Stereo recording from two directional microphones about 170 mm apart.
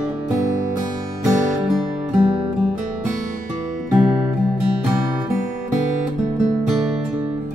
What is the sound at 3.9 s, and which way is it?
Music, 5° right (ahead or behind).